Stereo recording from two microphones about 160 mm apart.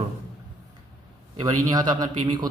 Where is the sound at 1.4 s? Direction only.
25° right (ahead or behind).